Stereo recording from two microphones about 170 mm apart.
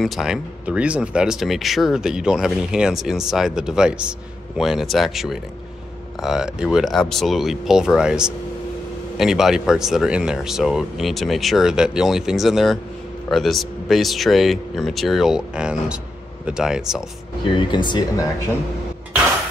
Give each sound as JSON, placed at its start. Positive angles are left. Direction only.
{"t": 0.0, "sound": "speech", "side_deg": 0}
{"t": 17.6, "sound": "speech", "side_deg": 25}